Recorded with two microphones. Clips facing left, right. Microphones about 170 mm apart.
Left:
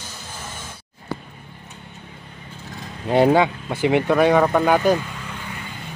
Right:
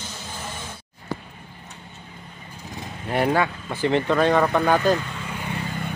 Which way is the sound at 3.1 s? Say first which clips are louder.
Left 6 dB; 25° left (ahead or behind).